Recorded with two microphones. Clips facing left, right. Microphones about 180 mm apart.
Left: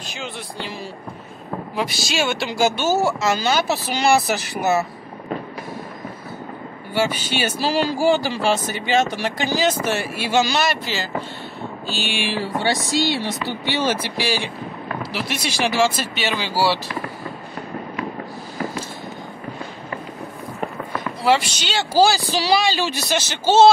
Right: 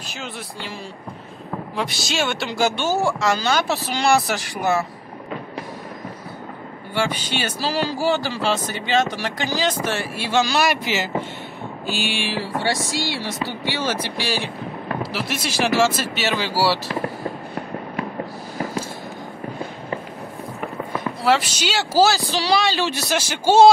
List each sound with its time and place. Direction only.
1.8 s speech: centre (ahead or behind)
7.0 s speech: 5° left (ahead or behind)
10.6 s speech: 15° right (ahead or behind)
12.6 s speech: 20° left (ahead or behind)
14.1 s speech: centre (ahead or behind)
21.2 s speech: centre (ahead or behind)
23.2 s speech: 10° right (ahead or behind)